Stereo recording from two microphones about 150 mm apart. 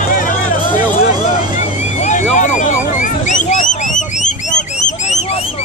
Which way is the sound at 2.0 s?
50° left (ahead or behind).